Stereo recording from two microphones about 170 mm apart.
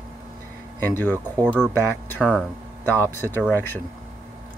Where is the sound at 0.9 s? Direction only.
10° left (ahead or behind).